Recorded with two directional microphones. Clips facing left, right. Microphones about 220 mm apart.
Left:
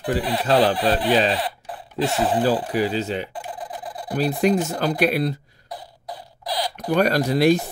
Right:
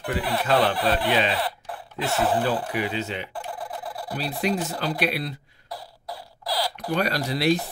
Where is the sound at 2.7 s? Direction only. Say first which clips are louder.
Left 5 dB; 35° left (ahead or behind).